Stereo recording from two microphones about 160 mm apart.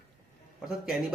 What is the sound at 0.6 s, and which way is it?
Speech, 5° right (ahead or behind).